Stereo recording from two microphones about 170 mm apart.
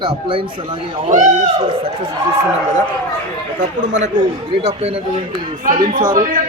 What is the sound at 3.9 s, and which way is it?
Speech, 45° right (ahead or behind).